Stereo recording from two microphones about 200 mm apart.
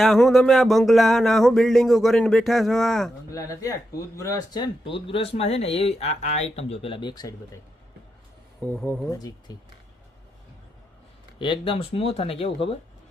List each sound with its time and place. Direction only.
0.0 s a sound: centre (ahead or behind)
3.3 s speech: 15° left (ahead or behind)
8.6 s speech: 10° left (ahead or behind)
11.3 s speech: 25° left (ahead or behind)